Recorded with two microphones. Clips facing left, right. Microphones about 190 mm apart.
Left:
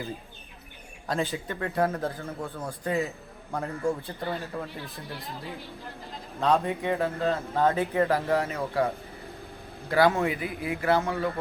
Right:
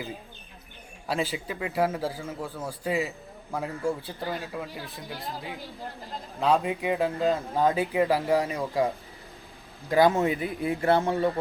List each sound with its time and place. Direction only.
1.0 s speech: 5° right (ahead or behind)
6.4 s speech: 10° right (ahead or behind)
9.9 s speech: 20° right (ahead or behind)
10.2 s a man's voice: 30° right (ahead or behind)